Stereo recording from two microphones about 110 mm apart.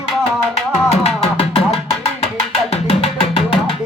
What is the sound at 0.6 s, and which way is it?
Music, 65° left (ahead or behind).